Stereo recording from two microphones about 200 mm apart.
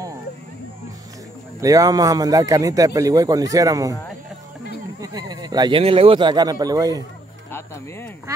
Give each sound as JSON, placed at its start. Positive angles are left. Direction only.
{"t": 1.6, "sound": "a man's voice", "side_deg": -15}
{"t": 5.0, "sound": "speech", "side_deg": -20}
{"t": 7.5, "sound": "music", "side_deg": 10}